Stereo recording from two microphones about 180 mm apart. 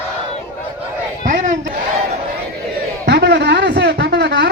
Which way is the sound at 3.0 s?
70° right (ahead or behind).